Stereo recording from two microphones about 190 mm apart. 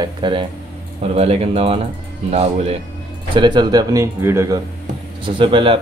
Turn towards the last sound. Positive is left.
turn(degrees=-25)  # may be behind; listen again after turning